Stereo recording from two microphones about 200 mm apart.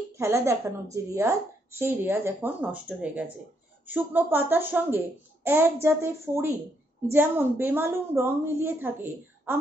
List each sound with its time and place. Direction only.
0.2 s a child's voice: 15° right (ahead or behind)